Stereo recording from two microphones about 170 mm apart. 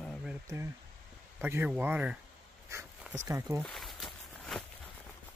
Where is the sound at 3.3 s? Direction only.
15° right (ahead or behind).